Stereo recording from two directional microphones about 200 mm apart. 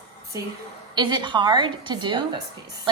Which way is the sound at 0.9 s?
20° right (ahead or behind).